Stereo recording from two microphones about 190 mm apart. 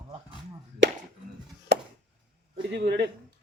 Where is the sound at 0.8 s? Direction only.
70° right (ahead or behind).